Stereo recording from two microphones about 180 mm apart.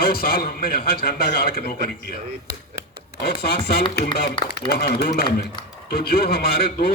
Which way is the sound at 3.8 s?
30° left (ahead or behind).